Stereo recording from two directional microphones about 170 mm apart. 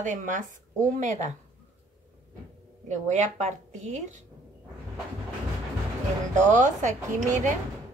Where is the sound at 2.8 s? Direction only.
45° right (ahead or behind).